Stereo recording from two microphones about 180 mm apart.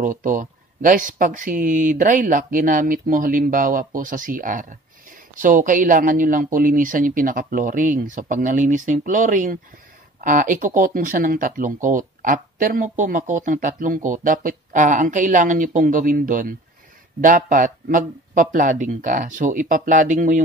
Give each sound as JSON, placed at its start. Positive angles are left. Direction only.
{"t": 0.0, "sound": "speech", "side_deg": -45}